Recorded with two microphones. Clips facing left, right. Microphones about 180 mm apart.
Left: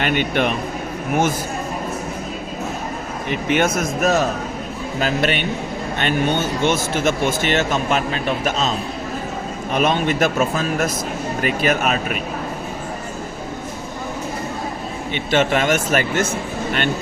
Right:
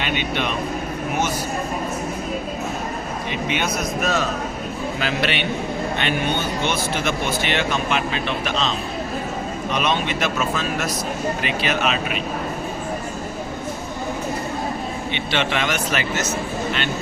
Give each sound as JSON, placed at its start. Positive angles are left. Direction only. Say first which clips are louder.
{"t": 0.0, "sound": "speech", "louder": "left 5 dB", "side_deg": 45}
{"t": 3.2, "sound": "speech", "louder": "left 7 dB", "side_deg": 50}
{"t": 9.7, "sound": "speech", "louder": "left 5 dB", "side_deg": 45}
{"t": 15.1, "sound": "speech", "louder": "left 7 dB", "side_deg": 45}